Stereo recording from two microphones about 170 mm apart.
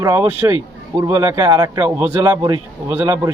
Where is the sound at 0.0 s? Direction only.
15° right (ahead or behind).